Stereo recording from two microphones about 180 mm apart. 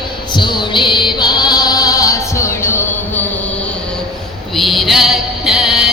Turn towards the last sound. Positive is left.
turn(degrees=-5)  # may be behind; listen again after turning